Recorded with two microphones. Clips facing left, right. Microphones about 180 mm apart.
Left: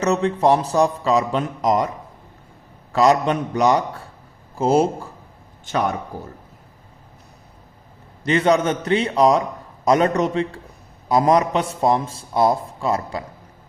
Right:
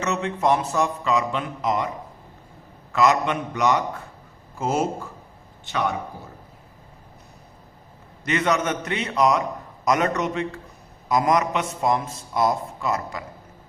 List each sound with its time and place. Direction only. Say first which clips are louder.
0.0 s a man's voice: left 6 dB; 35° left (ahead or behind)
2.9 s a man's voice: left 4 dB; 35° left (ahead or behind)
5.6 s speech: left 3 dB; 45° left (ahead or behind)
8.2 s a man's voice: left 5 dB; 30° left (ahead or behind)